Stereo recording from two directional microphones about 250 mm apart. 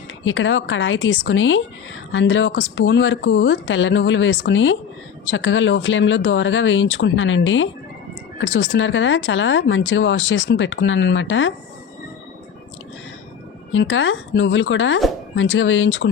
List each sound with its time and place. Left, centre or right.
0.3 s speech: left
13.7 s speech: left